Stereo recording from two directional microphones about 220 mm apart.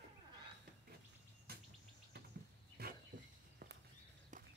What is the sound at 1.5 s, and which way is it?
Insect, 45° right (ahead or behind).